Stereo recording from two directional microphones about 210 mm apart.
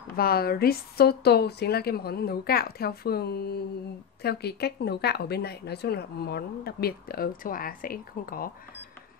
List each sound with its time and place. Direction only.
0.1 s a woman's voice: 45° left (ahead or behind)